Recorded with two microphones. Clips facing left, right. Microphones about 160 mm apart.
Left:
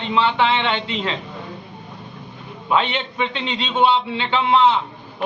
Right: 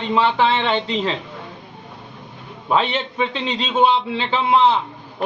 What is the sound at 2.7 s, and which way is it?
A man's voice, 35° right (ahead or behind).